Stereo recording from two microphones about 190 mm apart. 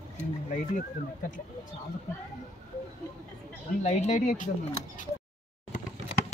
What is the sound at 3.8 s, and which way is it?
Speech, 40° left (ahead or behind).